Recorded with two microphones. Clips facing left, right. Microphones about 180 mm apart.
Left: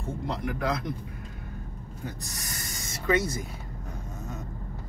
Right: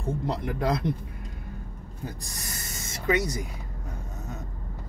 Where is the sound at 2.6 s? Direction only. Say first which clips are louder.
Right 2 dB; 20° right (ahead or behind).